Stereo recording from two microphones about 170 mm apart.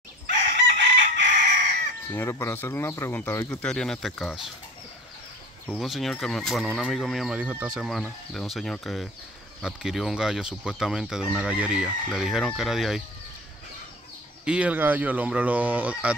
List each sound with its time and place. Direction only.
0.6 s chicken: 90° right
2.1 s speech: 15° left (ahead or behind); by 4.4 s centre (ahead or behind)
5.7 s speech: centre (ahead or behind)
14.4 s speech: 5° right (ahead or behind)